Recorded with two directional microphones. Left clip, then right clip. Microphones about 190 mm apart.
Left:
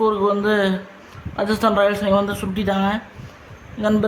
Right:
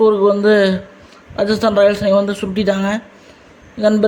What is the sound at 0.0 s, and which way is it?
A man's voice, 15° right (ahead or behind).